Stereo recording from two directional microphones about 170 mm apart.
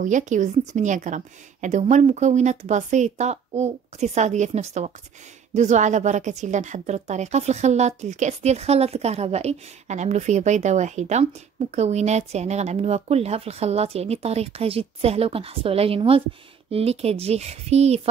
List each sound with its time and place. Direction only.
0.0 s a woman's voice: 45° right (ahead or behind)